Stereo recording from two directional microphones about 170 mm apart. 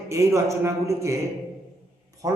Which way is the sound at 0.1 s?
15° right (ahead or behind).